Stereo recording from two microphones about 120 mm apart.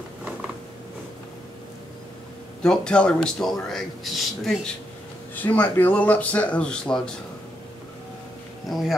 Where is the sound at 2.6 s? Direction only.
5° left (ahead or behind).